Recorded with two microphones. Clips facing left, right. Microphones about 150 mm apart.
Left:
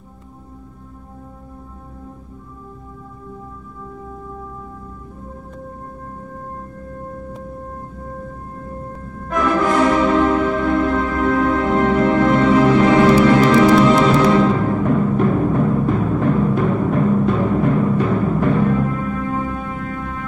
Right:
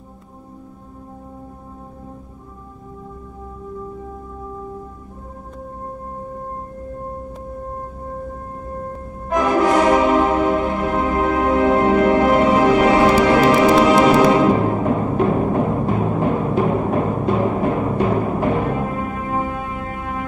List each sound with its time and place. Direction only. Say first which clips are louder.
9.3 s music: right 1 dB; 20° right (ahead or behind)